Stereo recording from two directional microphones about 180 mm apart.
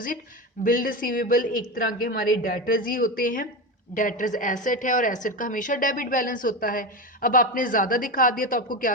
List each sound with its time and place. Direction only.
0.6 s a woman's voice: 50° left (ahead or behind)